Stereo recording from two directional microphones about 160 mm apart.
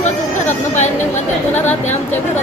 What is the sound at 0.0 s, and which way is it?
Speech, 50° left (ahead or behind).